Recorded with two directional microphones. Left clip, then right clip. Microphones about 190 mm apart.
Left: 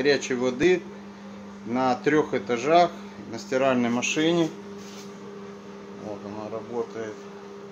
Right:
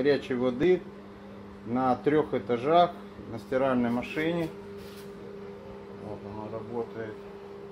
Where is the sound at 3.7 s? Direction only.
30° left (ahead or behind).